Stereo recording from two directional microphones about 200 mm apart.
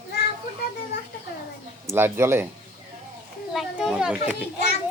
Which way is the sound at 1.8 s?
10° right (ahead or behind).